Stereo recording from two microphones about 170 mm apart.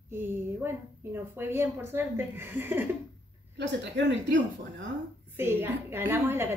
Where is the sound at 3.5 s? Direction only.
90° right.